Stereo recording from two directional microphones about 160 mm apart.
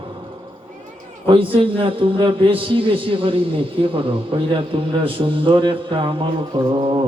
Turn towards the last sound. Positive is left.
turn(degrees=-30)  # may be behind; listen again after turning